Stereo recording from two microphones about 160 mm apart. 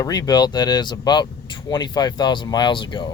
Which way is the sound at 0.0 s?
25° left (ahead or behind).